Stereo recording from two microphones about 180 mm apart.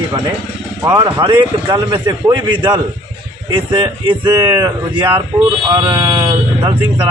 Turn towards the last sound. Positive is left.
turn(degrees=-25)  # may be behind; listen again after turning